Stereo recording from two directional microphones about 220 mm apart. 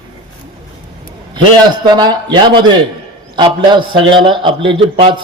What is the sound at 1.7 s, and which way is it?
A man's voice, 20° right (ahead or behind).